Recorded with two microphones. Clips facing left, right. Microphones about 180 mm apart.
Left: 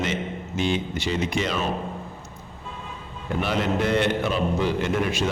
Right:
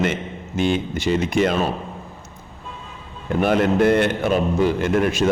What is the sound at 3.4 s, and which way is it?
A man's voice, 50° right (ahead or behind).